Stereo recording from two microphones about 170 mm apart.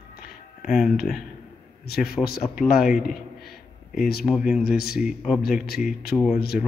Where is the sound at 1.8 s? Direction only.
65° left (ahead or behind).